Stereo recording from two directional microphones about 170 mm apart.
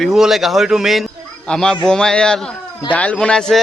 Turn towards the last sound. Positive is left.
turn(degrees=5)  # may be behind; listen again after turning